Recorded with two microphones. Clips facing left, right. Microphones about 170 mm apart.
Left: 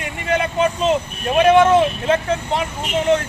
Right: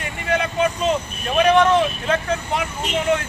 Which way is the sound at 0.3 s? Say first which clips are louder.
Left 2 dB; 25° left (ahead or behind).